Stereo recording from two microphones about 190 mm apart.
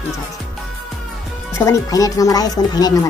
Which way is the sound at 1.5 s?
15° left (ahead or behind).